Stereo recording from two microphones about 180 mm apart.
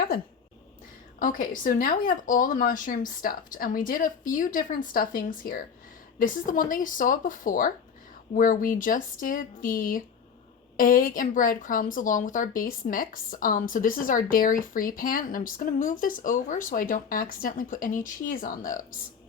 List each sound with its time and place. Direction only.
1.2 s speech: 50° left (ahead or behind)